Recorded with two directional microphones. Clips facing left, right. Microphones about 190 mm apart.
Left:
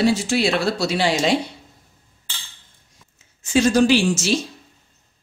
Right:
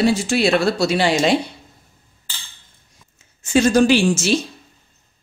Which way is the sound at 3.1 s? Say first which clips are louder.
Right 2 dB; 50° right (ahead or behind).